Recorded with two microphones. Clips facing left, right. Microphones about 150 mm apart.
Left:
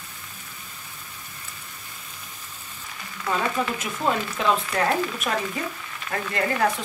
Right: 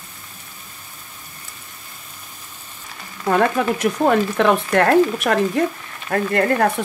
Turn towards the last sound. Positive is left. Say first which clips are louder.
# right 6 dB
turn(degrees=-55)  # may be behind; listen again after turning